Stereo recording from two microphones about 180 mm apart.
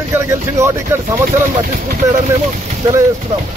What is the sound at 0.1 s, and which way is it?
Speech, 15° right (ahead or behind).